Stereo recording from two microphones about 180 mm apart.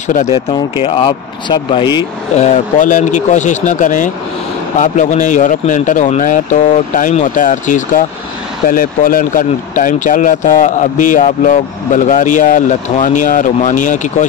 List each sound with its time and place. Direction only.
0.1 s speech: 35° left (ahead or behind)
2.3 s speech: 40° left (ahead or behind)